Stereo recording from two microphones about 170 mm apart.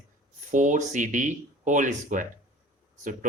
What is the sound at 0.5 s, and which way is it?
Speech, 50° right (ahead or behind).